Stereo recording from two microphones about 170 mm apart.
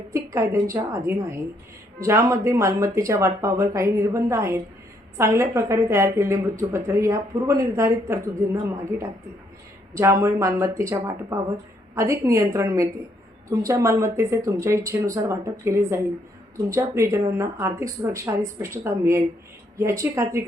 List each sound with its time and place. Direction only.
0.3 s a woman's voice: 15° right (ahead or behind)